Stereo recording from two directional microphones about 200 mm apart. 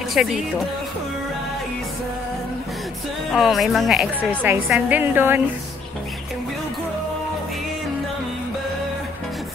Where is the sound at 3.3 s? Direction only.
Centre (ahead or behind).